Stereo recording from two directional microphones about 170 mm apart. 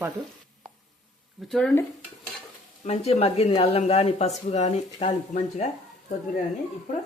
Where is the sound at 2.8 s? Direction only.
40° left (ahead or behind).